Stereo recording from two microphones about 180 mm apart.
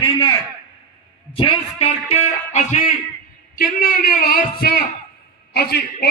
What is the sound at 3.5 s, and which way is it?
A man's voice, 50° left (ahead or behind).